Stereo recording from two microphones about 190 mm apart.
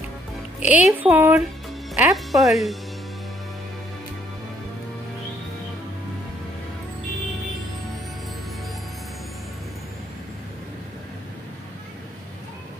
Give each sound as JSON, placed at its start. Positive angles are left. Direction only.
{"t": 0.7, "sound": "speech", "side_deg": -10}
{"t": 2.0, "sound": "speech", "side_deg": 0}